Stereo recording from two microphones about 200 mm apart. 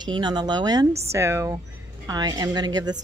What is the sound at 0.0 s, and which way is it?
A woman's voice, 20° right (ahead or behind).